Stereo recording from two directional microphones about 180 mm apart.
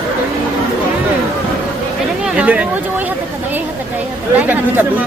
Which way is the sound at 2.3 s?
5° right (ahead or behind).